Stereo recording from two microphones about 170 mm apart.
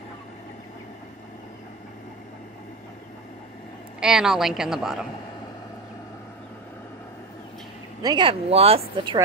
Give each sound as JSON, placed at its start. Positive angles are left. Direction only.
{"t": 4.0, "sound": "a woman's voice", "side_deg": -5}
{"t": 8.0, "sound": "speech", "side_deg": -25}